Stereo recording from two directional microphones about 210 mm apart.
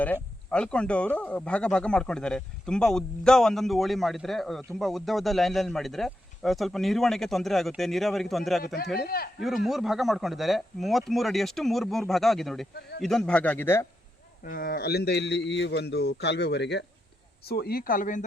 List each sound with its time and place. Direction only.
0.0 s speech: 5° left (ahead or behind)
8.6 s a man's voice: 50° left (ahead or behind)
9.4 s speech: centre (ahead or behind)
14.4 s a man's voice: 45° left (ahead or behind)